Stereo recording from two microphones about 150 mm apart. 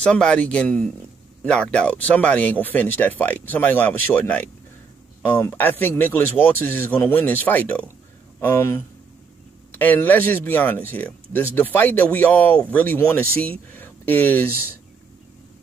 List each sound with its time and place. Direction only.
0.0 s speech: 5° left (ahead or behind)